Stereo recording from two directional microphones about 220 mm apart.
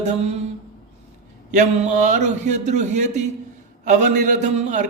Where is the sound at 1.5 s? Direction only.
35° right (ahead or behind).